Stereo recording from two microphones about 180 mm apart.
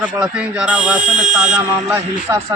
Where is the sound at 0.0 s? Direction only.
5° right (ahead or behind).